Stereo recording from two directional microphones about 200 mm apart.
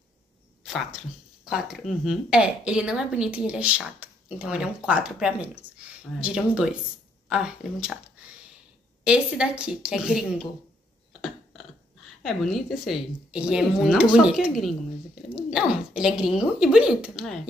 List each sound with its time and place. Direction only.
0.7 s speech: centre (ahead or behind)
9.0 s speech: 5° right (ahead or behind)
12.2 s speech: centre (ahead or behind)